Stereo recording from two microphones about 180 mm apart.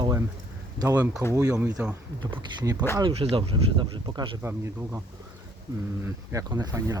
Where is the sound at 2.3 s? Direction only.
25° right (ahead or behind).